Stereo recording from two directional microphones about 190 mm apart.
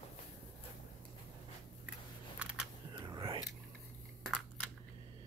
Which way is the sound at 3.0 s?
25° right (ahead or behind).